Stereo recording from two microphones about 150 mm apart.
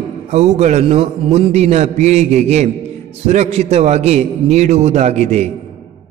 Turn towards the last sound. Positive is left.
turn(degrees=-50)  # may be behind; listen again after turning